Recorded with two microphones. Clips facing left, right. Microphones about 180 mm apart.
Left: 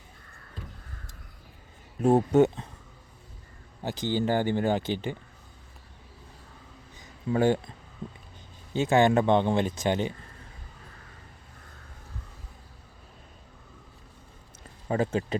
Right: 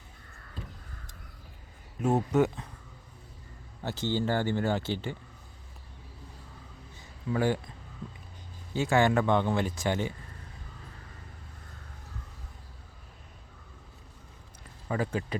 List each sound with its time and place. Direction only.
2.0 s speech: 30° left (ahead or behind)
3.8 s speech: 15° left (ahead or behind)
7.0 s a sound: 25° left (ahead or behind)
8.7 s speech: 20° left (ahead or behind)
14.8 s speech: 25° left (ahead or behind)